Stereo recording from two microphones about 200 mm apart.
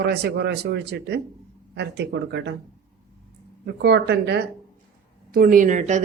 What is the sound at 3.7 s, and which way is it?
Speech, 55° right (ahead or behind).